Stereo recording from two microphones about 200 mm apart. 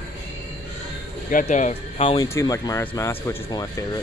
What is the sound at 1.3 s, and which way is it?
Speech, 40° left (ahead or behind).